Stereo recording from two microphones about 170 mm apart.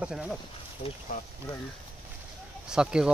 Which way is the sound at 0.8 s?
40° left (ahead or behind).